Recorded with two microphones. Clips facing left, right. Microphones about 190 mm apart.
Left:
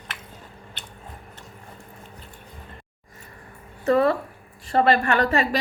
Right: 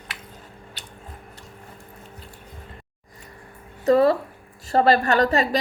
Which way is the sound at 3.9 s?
35° right (ahead or behind).